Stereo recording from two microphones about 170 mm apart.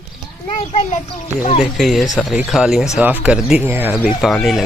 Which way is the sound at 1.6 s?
Centre (ahead or behind).